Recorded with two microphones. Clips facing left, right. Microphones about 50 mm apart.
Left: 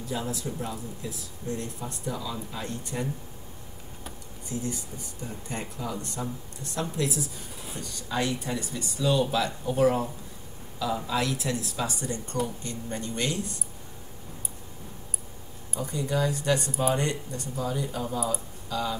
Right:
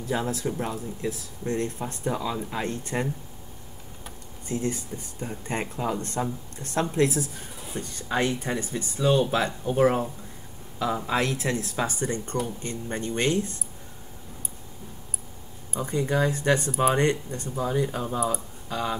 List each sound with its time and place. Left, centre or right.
0.0 s speech: right
4.5 s speech: right
15.8 s speech: right